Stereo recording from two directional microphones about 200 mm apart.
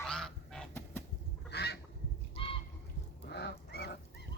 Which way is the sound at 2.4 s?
25° left (ahead or behind).